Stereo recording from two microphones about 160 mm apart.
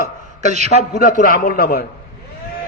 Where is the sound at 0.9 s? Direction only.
65° left (ahead or behind).